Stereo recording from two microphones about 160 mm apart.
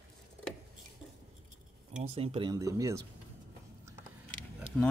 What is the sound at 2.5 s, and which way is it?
Speech, 20° right (ahead or behind).